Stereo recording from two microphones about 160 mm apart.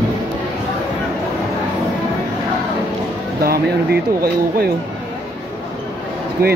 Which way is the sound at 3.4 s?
75° right (ahead or behind).